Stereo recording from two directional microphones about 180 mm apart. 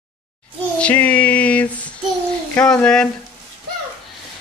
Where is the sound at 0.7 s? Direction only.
10° left (ahead or behind).